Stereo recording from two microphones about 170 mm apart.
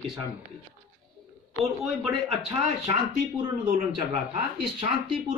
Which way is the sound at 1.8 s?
Centre (ahead or behind).